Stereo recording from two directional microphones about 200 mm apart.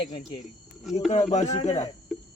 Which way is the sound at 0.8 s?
Centre (ahead or behind).